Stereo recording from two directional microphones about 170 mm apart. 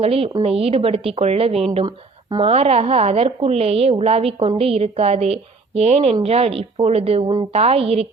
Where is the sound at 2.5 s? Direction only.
40° right (ahead or behind).